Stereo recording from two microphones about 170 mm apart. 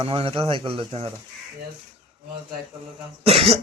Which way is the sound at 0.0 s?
35° right (ahead or behind).